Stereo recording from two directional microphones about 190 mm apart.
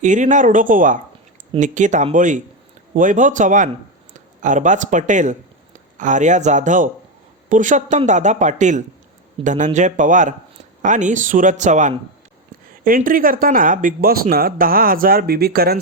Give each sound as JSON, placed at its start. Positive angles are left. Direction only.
{"t": 0.0, "sound": "a woman's voice", "side_deg": -40}